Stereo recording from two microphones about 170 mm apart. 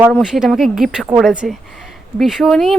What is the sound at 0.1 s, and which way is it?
Speech, 5° right (ahead or behind).